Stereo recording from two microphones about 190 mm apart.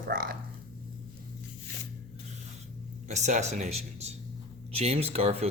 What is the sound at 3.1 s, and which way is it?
Speech, 35° right (ahead or behind).